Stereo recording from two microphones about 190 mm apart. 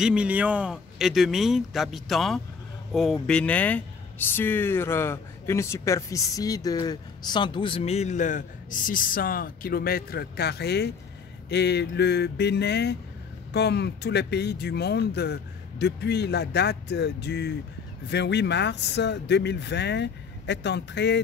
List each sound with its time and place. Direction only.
0.0 s speech: 5° right (ahead or behind); by 21.2 s 65° left (ahead or behind)